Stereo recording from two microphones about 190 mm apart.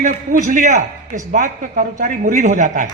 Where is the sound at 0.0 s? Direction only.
45° right (ahead or behind).